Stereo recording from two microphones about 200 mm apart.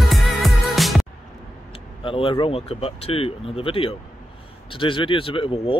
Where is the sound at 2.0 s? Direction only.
25° left (ahead or behind).